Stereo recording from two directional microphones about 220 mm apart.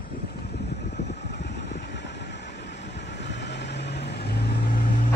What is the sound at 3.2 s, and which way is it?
Vehicle, 50° left (ahead or behind).